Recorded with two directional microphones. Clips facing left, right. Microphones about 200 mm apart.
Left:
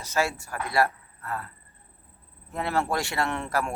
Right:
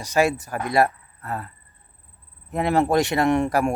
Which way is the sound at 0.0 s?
15° right (ahead or behind).